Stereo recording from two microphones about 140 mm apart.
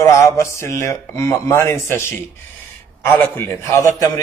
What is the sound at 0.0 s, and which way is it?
A man's voice, 20° left (ahead or behind).